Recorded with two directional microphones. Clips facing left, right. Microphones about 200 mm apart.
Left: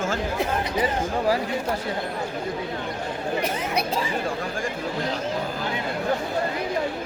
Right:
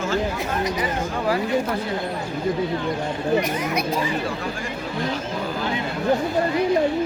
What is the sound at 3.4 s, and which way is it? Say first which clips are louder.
Speech: right 1 dB; 30° left (ahead or behind).